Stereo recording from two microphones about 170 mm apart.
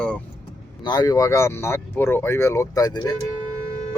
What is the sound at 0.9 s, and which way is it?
Speech, 25° left (ahead or behind).